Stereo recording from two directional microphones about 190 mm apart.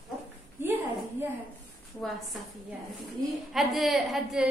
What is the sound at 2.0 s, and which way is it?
Speech, 5° left (ahead or behind).